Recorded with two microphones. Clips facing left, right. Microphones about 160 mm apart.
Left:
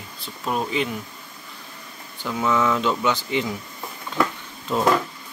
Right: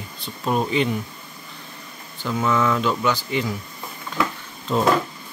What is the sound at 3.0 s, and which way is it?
Speech, 20° left (ahead or behind).